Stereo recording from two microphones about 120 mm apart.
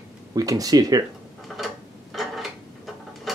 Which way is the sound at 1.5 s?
Centre (ahead or behind).